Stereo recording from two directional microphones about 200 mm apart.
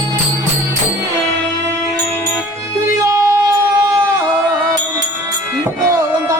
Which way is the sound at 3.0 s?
15° right (ahead or behind).